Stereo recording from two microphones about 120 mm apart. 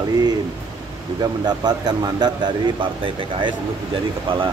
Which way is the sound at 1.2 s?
35° right (ahead or behind).